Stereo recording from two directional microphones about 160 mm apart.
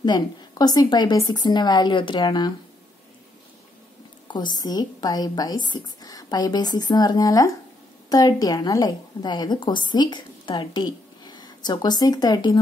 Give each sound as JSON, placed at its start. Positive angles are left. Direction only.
{"t": 0.0, "sound": "speech", "side_deg": 25}
{"t": 4.3, "sound": "a woman's voice", "side_deg": 25}